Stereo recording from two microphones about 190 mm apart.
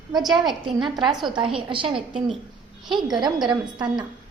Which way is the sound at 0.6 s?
25° right (ahead or behind).